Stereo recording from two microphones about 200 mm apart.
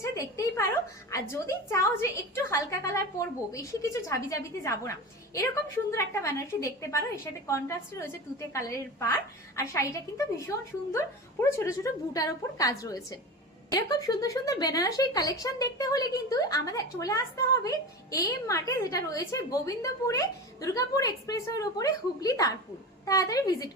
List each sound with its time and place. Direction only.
0.0 s a woman's voice: 15° left (ahead or behind)
5.9 s speech: 15° left (ahead or behind)